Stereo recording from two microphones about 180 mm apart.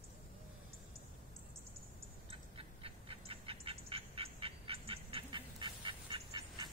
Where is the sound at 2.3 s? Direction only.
30° right (ahead or behind).